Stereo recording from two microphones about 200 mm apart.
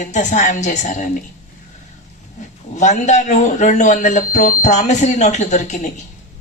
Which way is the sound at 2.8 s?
35° left (ahead or behind).